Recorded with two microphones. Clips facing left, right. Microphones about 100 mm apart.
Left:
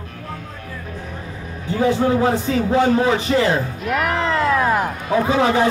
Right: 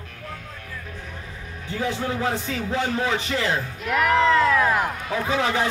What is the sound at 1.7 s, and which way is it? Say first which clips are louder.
A man's voice: left 9 dB; 40° left (ahead or behind).